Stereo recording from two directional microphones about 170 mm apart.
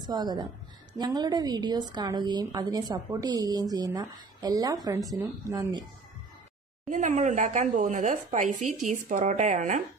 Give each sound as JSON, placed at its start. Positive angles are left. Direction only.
{"t": 0.0, "sound": "a woman's voice", "side_deg": -25}
{"t": 6.9, "sound": "speech", "side_deg": -45}